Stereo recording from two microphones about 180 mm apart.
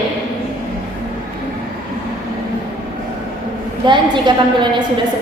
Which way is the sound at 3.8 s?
25° right (ahead or behind).